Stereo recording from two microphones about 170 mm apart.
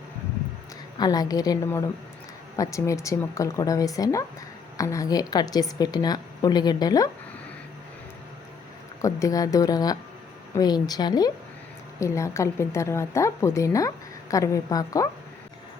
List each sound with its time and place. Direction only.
0.9 s a woman's voice: 25° left (ahead or behind)
9.0 s a woman's voice: 20° left (ahead or behind)